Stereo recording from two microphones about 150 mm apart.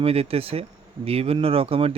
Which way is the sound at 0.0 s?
40° right (ahead or behind).